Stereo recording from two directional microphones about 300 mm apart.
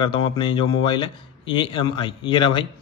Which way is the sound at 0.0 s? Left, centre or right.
Centre.